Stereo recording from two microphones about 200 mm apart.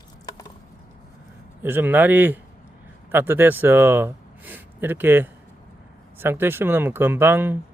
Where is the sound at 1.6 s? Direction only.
10° right (ahead or behind).